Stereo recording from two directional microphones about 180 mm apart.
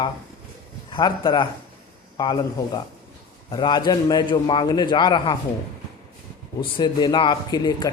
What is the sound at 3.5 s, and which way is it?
Speech, 25° left (ahead or behind).